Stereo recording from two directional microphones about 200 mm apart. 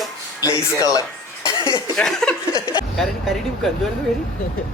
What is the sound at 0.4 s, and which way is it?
Speech, 15° left (ahead or behind).